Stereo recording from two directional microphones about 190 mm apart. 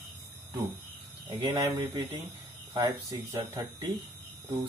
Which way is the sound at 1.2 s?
20° right (ahead or behind).